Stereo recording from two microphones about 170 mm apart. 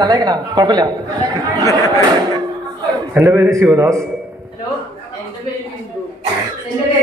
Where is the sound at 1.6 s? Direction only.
20° left (ahead or behind).